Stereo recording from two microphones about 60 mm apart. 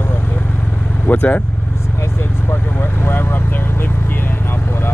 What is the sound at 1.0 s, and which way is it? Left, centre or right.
Speech, left.